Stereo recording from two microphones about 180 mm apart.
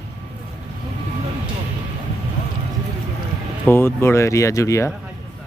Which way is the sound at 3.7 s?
15° left (ahead or behind).